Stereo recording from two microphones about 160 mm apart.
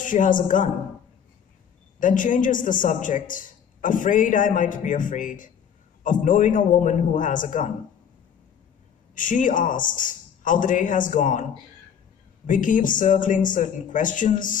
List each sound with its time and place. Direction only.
0.0 s a man's voice: 55° left (ahead or behind)
2.0 s a man's voice: 55° left (ahead or behind)
9.1 s a man's voice: 55° left (ahead or behind)
12.4 s a man's voice: 55° left (ahead or behind)